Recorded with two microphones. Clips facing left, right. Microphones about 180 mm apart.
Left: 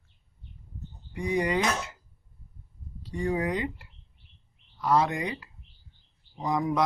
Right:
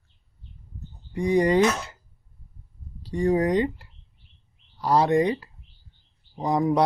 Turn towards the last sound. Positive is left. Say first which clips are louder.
# right 5 dB
turn(degrees=-35)  # may be behind; listen again after turning